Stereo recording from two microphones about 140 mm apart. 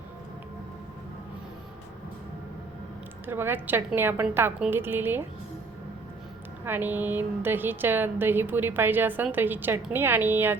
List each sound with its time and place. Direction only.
3.2 s a woman's voice: 15° right (ahead or behind)
6.7 s a woman's voice: 15° right (ahead or behind)